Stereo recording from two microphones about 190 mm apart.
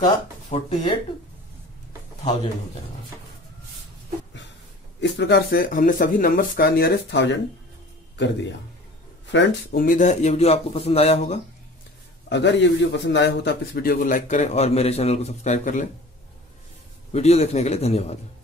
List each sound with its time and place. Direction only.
0.5 s a man's voice: 35° left (ahead or behind)
5.0 s a man's voice: 65° left (ahead or behind)
9.3 s a man's voice: 65° left (ahead or behind); by 11.3 s 35° left (ahead or behind)
12.3 s a man's voice: 65° left (ahead or behind); by 15.9 s 40° left (ahead or behind)
17.1 s a man's voice: 35° left (ahead or behind)